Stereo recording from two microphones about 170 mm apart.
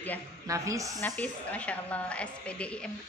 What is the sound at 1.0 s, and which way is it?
A woman's voice, 10° left (ahead or behind).